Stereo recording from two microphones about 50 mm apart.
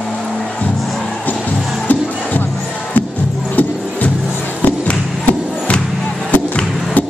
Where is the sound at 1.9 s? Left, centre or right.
Left.